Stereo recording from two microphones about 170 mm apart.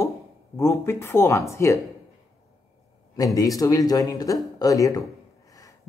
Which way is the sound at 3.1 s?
20° left (ahead or behind).